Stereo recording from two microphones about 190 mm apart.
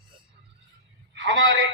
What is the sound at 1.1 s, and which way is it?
Speech, 65° right (ahead or behind).